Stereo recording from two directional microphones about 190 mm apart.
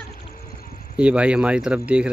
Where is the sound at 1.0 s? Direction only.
5° right (ahead or behind).